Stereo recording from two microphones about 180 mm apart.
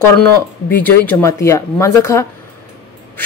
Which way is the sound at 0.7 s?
10° left (ahead or behind).